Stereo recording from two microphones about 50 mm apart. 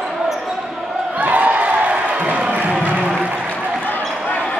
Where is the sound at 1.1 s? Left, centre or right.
Right.